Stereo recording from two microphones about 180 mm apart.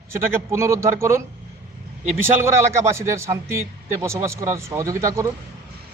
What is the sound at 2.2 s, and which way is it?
A man's voice, 15° right (ahead or behind).